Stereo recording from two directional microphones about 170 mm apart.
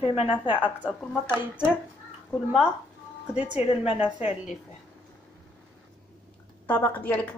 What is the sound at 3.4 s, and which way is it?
Speech, 40° left (ahead or behind).